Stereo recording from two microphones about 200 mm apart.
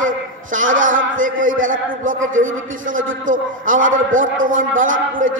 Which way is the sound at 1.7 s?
40° right (ahead or behind).